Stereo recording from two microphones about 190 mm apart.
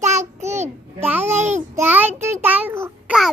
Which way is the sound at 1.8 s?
10° right (ahead or behind).